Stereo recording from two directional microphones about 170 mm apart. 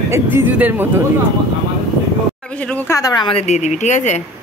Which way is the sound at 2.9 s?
20° left (ahead or behind).